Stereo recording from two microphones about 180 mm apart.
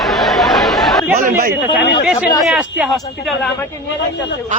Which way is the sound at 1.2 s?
50° right (ahead or behind).